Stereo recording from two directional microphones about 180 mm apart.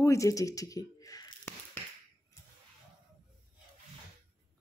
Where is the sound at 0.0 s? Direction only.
15° left (ahead or behind).